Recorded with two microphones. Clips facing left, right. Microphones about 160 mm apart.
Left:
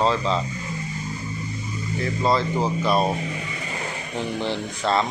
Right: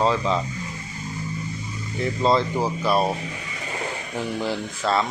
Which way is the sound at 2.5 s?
10° right (ahead or behind).